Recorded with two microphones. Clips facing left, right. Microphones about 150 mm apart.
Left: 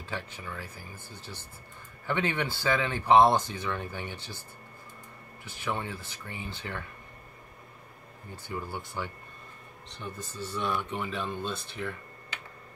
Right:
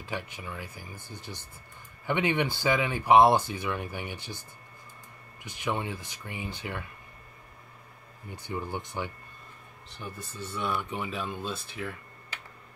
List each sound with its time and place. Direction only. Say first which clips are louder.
0.0 s speech: right 1 dB; 15° right (ahead or behind)
8.4 s speech: right 2 dB; 15° right (ahead or behind)
9.8 s speech: left 1 dB; 5° right (ahead or behind)